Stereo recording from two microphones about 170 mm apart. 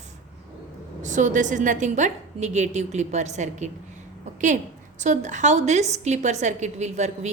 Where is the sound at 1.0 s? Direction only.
50° right (ahead or behind).